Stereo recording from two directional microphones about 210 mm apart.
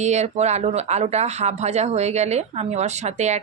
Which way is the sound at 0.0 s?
35° right (ahead or behind).